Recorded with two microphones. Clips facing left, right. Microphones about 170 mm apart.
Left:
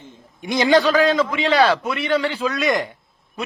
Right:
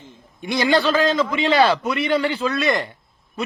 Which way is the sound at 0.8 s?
Centre (ahead or behind).